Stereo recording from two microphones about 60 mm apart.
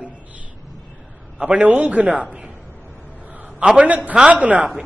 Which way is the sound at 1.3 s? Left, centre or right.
Centre.